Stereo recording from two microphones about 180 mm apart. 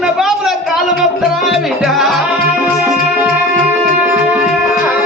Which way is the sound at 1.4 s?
Centre (ahead or behind).